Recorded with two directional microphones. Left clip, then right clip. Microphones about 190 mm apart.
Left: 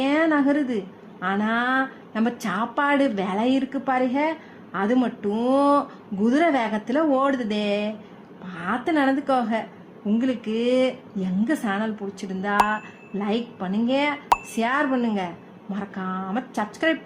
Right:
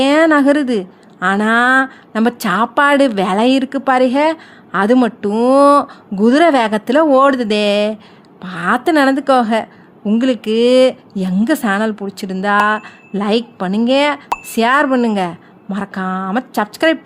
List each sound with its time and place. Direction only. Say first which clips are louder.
0.0 s a woman's voice: right 10 dB; 45° right (ahead or behind)